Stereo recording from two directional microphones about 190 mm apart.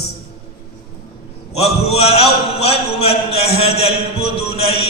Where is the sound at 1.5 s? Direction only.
30° left (ahead or behind).